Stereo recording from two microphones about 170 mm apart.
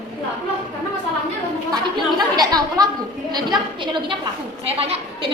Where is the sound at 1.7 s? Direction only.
25° right (ahead or behind).